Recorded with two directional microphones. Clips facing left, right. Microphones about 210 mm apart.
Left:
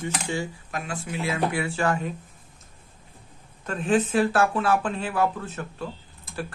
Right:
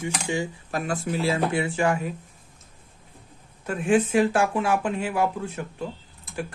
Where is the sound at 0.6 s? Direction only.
40° right (ahead or behind); by 2.1 s 10° right (ahead or behind).